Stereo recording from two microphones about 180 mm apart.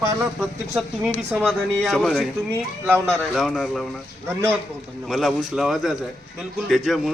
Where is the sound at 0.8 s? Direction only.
Centre (ahead or behind).